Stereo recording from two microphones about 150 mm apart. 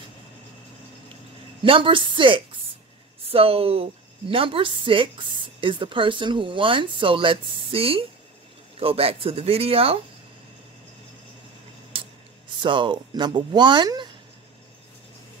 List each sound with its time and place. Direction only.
1.6 s speech: 35° right (ahead or behind)
11.9 s a sound: 35° right (ahead or behind)
12.6 s speech: 35° right (ahead or behind)